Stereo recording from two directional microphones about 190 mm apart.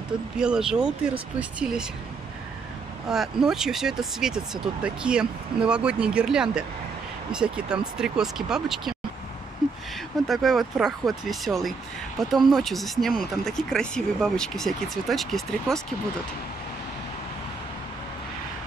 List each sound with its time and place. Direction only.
0.4 s speech: 5° right (ahead or behind)
3.1 s speech: centre (ahead or behind)
10.2 s speech: centre (ahead or behind)